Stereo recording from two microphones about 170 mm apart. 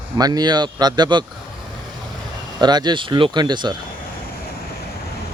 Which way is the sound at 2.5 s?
25° right (ahead or behind).